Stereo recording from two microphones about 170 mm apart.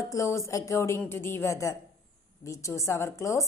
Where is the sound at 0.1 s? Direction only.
20° left (ahead or behind).